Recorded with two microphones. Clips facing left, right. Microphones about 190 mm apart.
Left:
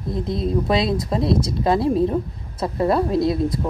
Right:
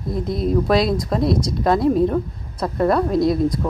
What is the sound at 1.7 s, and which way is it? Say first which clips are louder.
A woman's voice: right 2 dB; 30° left (ahead or behind).